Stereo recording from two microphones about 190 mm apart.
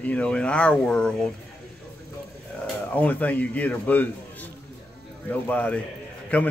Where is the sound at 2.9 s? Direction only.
10° left (ahead or behind).